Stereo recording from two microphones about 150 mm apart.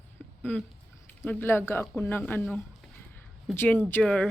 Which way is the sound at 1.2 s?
15° left (ahead or behind).